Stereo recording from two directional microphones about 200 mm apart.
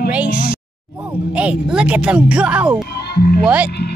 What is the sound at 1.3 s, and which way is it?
Speech, 5° right (ahead or behind).